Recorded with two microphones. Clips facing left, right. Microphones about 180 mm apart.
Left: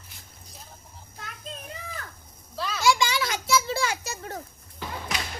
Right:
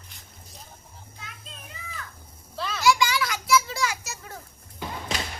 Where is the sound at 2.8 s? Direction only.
25° left (ahead or behind).